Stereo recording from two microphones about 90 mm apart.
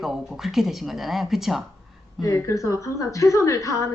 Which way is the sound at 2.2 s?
40° left (ahead or behind).